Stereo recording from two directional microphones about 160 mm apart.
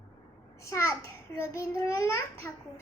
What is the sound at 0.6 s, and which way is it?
Speech, 15° left (ahead or behind).